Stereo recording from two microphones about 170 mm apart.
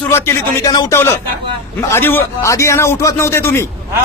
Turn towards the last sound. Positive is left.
turn(degrees=15)  # may be behind; listen again after turning